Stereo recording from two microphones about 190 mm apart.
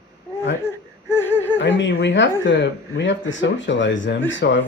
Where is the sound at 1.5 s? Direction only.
70° left (ahead or behind).